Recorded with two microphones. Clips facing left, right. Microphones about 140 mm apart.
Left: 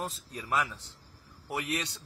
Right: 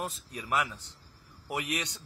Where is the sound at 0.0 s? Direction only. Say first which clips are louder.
Even; 10° right (ahead or behind).